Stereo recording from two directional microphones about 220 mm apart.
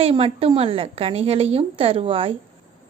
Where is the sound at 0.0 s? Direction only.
25° right (ahead or behind).